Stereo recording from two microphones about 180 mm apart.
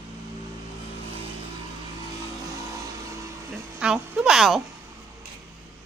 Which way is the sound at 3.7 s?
5° right (ahead or behind).